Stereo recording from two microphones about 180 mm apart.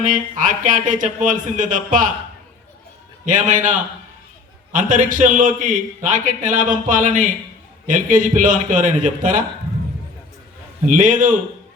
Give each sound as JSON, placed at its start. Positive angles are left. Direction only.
{"t": 0.0, "sound": "a man's voice", "side_deg": -45}
{"t": 3.2, "sound": "a man's voice", "side_deg": -45}
{"t": 4.7, "sound": "a man's voice", "side_deg": -45}
{"t": 10.8, "sound": "a man's voice", "side_deg": -45}